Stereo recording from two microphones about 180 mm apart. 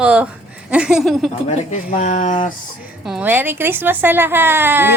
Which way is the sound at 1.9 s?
45° left (ahead or behind).